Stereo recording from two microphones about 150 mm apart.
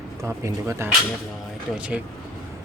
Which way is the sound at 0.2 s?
20° right (ahead or behind).